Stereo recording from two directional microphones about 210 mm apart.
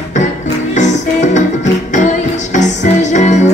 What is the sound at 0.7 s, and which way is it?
Music, 35° left (ahead or behind).